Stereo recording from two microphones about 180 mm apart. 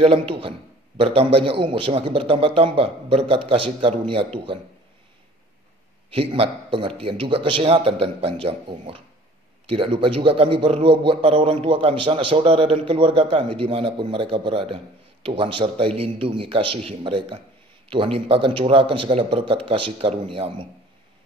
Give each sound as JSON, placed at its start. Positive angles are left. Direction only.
{"t": 0.0, "sound": "a man's voice", "side_deg": -30}
{"t": 6.0, "sound": "a man's voice", "side_deg": -30}